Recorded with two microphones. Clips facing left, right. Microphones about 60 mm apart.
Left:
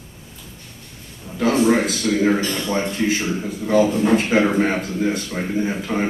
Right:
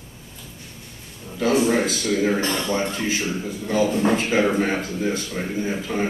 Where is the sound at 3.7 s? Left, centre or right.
Left.